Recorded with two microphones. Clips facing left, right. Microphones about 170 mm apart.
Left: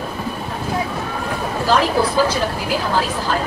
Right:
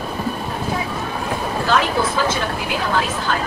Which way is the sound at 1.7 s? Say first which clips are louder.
Left 3 dB; 35° left (ahead or behind).